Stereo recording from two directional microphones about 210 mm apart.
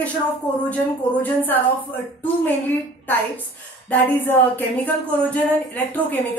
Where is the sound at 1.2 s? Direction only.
10° left (ahead or behind).